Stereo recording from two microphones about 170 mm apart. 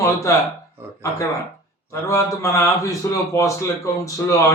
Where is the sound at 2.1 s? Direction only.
15° left (ahead or behind).